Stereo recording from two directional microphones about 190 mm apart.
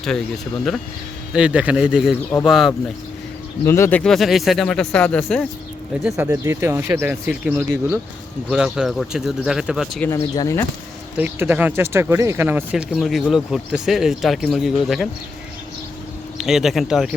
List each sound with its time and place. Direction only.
1.3 s speech: 5° right (ahead or behind)
3.7 s speech: 10° left (ahead or behind)
6.1 s speech: 10° right (ahead or behind)
10.1 s speech: 15° left (ahead or behind)
11.2 s speech: 10° right (ahead or behind)
16.4 s speech: centre (ahead or behind)